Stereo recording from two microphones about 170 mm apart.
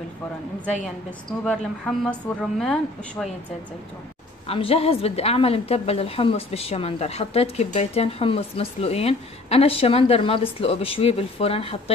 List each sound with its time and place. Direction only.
1.4 s a woman's voice: 5° left (ahead or behind)
4.5 s a woman's voice: 35° left (ahead or behind)